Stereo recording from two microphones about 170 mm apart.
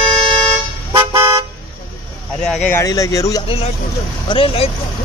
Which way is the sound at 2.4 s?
5° left (ahead or behind).